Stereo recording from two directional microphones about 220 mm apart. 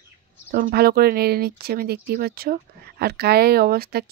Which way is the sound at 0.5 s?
45° right (ahead or behind).